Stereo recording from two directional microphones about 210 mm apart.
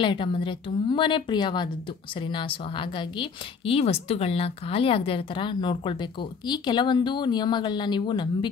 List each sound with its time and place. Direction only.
0.0 s a woman's voice: 25° left (ahead or behind)